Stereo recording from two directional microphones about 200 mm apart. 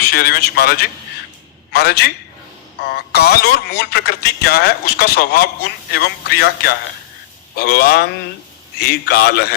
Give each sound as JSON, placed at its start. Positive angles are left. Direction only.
{"t": 0.0, "sound": "speech", "side_deg": 55}